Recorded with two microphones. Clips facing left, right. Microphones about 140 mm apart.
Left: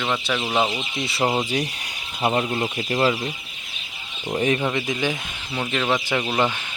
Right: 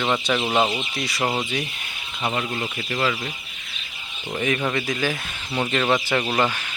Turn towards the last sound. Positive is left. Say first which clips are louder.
# even
turn(degrees=10)  # may be behind; listen again after turning